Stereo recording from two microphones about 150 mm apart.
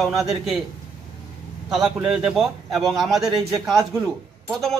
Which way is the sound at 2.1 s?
5° right (ahead or behind).